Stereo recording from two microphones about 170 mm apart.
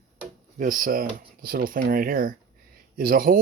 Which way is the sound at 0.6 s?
55° right (ahead or behind).